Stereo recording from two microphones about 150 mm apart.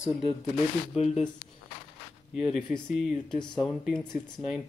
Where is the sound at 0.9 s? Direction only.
45° left (ahead or behind).